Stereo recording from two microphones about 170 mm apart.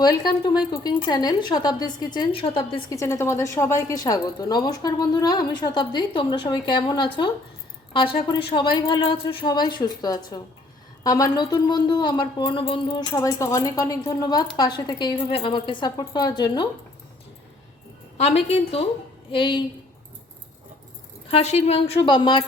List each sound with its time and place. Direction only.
0.0 s speech: 25° left (ahead or behind)
2.9 s speech: 20° left (ahead or behind)
8.3 s speech: 30° left (ahead or behind)
18.2 s a woman's voice: 35° left (ahead or behind)
21.2 s a woman's voice: 35° left (ahead or behind)
22.0 s speech: 25° left (ahead or behind)